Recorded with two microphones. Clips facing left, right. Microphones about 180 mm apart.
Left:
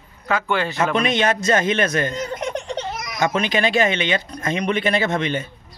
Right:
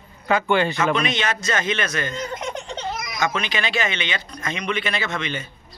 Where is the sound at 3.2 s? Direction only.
50° left (ahead or behind).